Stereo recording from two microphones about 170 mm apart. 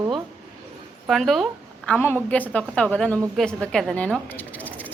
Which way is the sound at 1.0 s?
Centre (ahead or behind).